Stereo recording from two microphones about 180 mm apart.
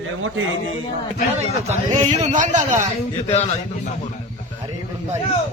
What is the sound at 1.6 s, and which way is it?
A man's voice, 40° right (ahead or behind).